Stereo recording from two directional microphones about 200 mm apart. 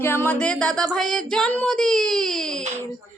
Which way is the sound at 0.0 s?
10° left (ahead or behind).